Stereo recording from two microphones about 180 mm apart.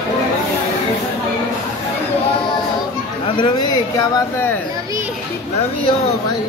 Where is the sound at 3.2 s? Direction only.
25° left (ahead or behind).